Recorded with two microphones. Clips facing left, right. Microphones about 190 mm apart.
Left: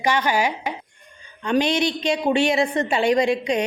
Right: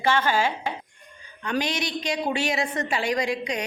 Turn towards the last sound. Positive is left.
turn(degrees=25)  # may be behind; listen again after turning